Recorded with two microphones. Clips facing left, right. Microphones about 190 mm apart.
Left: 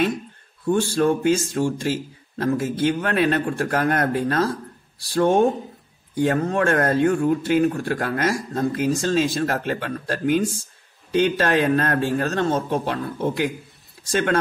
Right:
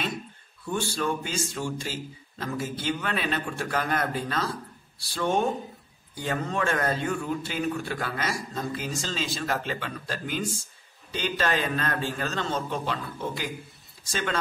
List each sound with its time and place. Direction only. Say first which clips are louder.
0.7 s a man's voice: left 9 dB; 50° left (ahead or behind)